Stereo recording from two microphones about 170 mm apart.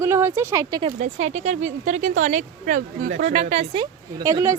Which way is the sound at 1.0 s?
40° right (ahead or behind).